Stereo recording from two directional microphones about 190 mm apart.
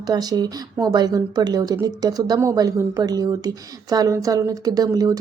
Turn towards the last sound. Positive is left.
turn(degrees=-20)  # may be behind; listen again after turning